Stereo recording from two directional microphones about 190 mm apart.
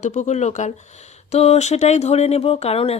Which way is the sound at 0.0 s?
40° left (ahead or behind).